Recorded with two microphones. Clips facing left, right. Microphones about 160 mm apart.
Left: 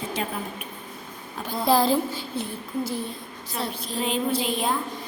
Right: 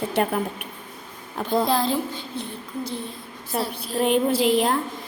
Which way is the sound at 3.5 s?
50° right (ahead or behind).